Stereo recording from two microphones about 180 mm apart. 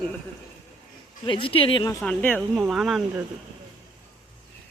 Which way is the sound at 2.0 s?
10° left (ahead or behind).